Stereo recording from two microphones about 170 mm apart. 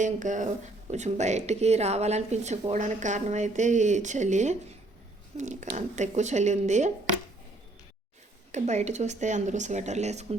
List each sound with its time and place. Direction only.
0.0 s speech: 45° right (ahead or behind)
8.5 s speech: 40° right (ahead or behind)